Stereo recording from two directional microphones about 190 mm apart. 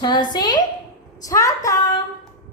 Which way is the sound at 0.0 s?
20° left (ahead or behind).